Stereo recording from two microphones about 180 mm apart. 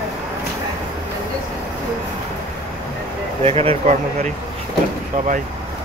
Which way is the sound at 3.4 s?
35° right (ahead or behind).